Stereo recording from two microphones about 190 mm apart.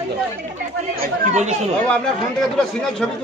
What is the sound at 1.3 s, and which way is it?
Speech, 40° right (ahead or behind).